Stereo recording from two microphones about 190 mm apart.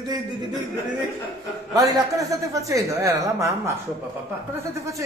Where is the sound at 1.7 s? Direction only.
20° right (ahead or behind).